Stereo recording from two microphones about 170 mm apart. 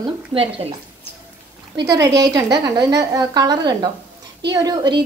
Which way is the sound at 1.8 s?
20° right (ahead or behind).